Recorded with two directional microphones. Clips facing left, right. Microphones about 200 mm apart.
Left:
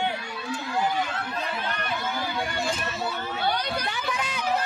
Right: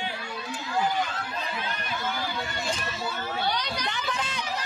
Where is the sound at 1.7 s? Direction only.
60° left (ahead or behind).